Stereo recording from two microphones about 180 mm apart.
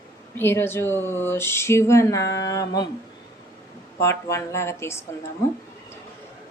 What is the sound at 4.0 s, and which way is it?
A woman's voice, 15° left (ahead or behind).